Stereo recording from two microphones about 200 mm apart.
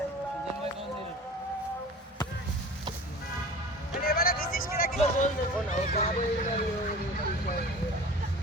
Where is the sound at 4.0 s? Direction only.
50° left (ahead or behind).